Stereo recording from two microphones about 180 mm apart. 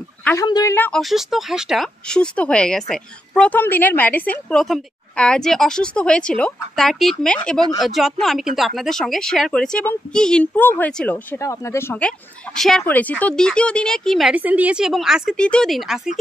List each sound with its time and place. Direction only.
0.2 s a sound: 10° left (ahead or behind)
0.5 s a woman's voice: 20° left (ahead or behind)
0.7 s speech: 10° left (ahead or behind)
1.0 s speech: centre (ahead or behind)